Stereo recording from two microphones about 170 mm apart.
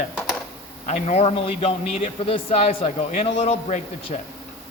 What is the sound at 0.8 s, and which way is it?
A man's voice, 40° left (ahead or behind).